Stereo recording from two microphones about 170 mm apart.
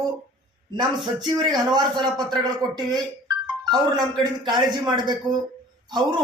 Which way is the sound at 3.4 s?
25° right (ahead or behind).